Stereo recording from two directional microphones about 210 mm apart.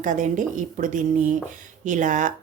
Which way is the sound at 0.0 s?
35° right (ahead or behind).